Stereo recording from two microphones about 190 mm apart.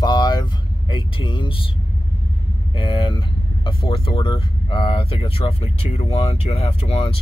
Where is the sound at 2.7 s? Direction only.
25° left (ahead or behind).